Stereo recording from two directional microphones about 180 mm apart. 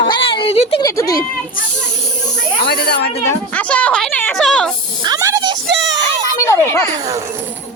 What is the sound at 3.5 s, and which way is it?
A woman's voice, 5° left (ahead or behind).